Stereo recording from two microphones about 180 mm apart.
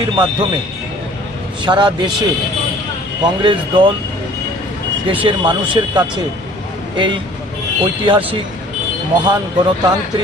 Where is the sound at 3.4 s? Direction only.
25° right (ahead or behind).